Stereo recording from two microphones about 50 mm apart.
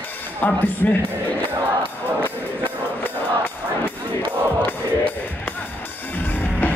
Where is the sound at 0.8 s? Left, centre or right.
Left.